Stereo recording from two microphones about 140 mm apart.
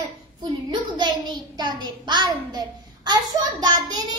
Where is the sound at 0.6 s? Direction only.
30° right (ahead or behind).